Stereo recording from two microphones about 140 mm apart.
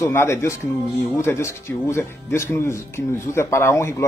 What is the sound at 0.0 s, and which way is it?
A man's voice, 20° left (ahead or behind).